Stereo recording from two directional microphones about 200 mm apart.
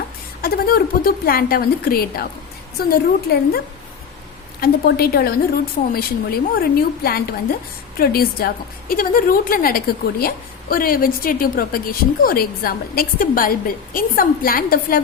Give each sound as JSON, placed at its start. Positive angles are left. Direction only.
{"t": 0.4, "sound": "a woman's voice", "side_deg": 50}
{"t": 4.6, "sound": "a woman's voice", "side_deg": 50}